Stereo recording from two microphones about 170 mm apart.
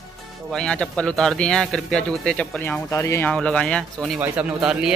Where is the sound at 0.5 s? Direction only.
5° left (ahead or behind).